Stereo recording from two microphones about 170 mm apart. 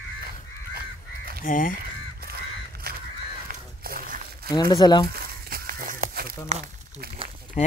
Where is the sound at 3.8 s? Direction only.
60° right (ahead or behind).